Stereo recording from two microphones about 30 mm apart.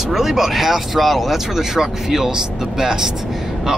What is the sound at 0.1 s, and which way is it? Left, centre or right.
Speech, centre.